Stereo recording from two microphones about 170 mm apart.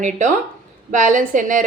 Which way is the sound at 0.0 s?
50° right (ahead or behind).